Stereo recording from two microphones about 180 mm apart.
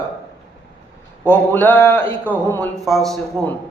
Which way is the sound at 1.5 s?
10° left (ahead or behind).